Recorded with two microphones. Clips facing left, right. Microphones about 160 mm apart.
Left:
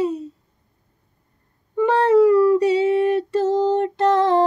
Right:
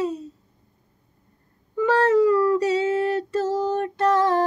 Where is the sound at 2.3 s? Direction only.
25° left (ahead or behind).